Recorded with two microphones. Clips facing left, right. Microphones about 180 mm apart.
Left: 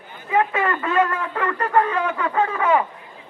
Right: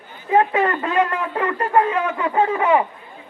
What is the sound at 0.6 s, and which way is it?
A man's voice, 30° right (ahead or behind).